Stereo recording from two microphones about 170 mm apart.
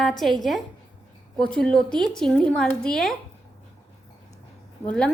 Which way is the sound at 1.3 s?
5° left (ahead or behind).